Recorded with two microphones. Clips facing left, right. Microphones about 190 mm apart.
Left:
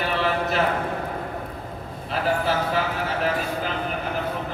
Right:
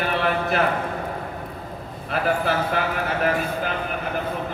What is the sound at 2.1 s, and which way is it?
Speech, 60° right (ahead or behind).